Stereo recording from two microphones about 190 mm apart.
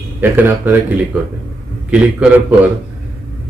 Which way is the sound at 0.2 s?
10° right (ahead or behind).